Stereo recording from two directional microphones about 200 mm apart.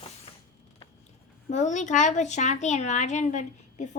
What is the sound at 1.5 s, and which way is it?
A woman's voice, 35° left (ahead or behind).